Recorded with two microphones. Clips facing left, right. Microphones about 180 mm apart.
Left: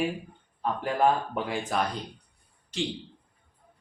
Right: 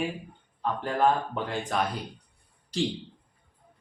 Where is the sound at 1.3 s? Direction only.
5° left (ahead or behind).